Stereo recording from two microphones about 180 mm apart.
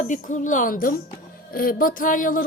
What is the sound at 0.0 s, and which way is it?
A woman's voice, 45° left (ahead or behind).